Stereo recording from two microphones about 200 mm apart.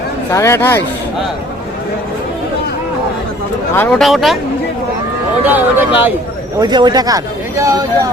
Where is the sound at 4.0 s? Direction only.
Centre (ahead or behind).